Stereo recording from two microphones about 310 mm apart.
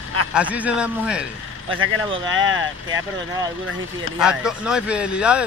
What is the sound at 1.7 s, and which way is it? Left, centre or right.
Speech, right.